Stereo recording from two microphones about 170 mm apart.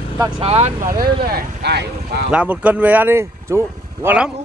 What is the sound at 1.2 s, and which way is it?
Speech, 70° right (ahead or behind).